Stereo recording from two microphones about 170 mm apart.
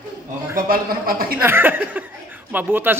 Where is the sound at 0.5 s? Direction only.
60° right (ahead or behind).